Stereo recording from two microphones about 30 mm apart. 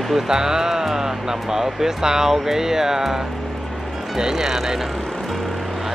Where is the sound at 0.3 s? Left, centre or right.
Centre.